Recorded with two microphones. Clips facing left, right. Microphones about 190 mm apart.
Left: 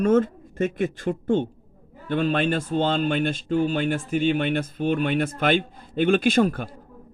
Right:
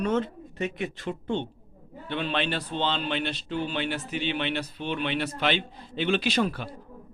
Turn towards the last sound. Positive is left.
turn(degrees=50)  # may be behind; listen again after turning